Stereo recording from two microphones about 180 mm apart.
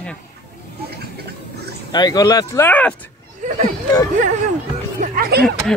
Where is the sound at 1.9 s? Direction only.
20° left (ahead or behind).